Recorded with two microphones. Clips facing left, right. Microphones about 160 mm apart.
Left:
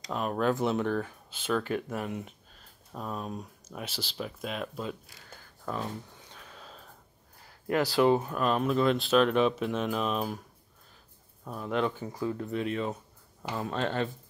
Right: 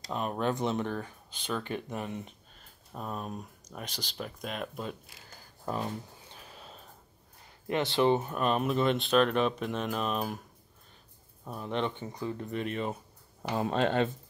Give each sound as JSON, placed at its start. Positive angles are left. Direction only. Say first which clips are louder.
{"t": 0.1, "sound": "speech", "louder": "left 3 dB", "side_deg": 0}
{"t": 6.4, "sound": "a sound", "louder": "left 1 dB", "side_deg": -10}
{"t": 7.8, "sound": "speech", "louder": "left 2 dB", "side_deg": 5}
{"t": 11.4, "sound": "speech", "louder": "left 3 dB", "side_deg": -5}
{"t": 13.4, "sound": "speech", "louder": "right 3 dB", "side_deg": -25}